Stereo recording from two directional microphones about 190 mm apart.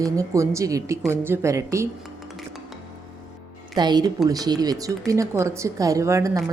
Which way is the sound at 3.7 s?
20° right (ahead or behind).